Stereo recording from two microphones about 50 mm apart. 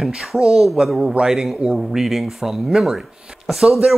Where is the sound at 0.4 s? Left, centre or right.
Centre.